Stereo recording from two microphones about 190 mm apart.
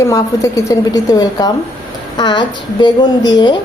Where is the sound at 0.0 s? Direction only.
15° left (ahead or behind).